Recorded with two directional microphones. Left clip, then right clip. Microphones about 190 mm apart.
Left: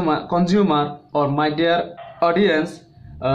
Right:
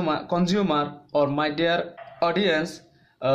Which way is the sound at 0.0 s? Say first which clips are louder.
Left 5 dB; 50° right (ahead or behind).